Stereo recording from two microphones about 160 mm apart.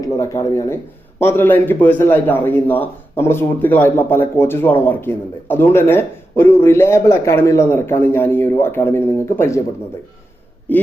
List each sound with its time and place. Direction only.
0.2 s a man's voice: 20° left (ahead or behind)
10.7 s a man's voice: 10° left (ahead or behind)